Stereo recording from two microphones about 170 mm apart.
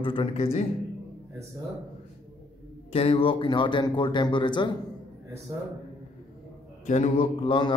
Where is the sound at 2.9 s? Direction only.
35° left (ahead or behind).